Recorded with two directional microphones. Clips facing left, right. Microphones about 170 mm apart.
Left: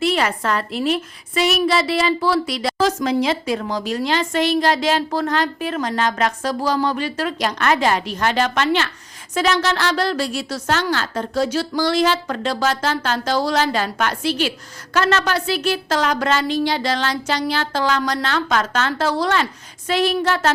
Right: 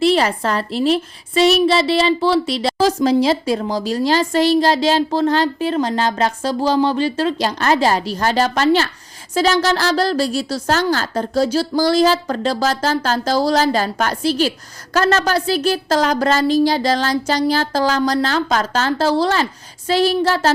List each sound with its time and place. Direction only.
0.0 s a woman's voice: 30° right (ahead or behind)